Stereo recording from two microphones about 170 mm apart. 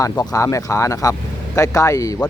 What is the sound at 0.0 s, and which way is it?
Speech, 20° left (ahead or behind).